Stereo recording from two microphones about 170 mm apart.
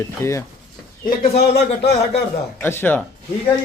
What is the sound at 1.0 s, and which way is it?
Speech, 70° left (ahead or behind).